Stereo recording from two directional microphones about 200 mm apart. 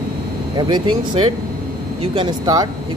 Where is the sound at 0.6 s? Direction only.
20° right (ahead or behind).